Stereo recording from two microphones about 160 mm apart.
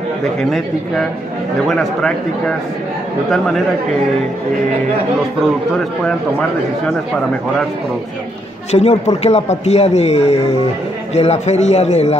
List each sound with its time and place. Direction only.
1.7 s a man's voice: 5° left (ahead or behind)
8.7 s a man's voice: 40° left (ahead or behind)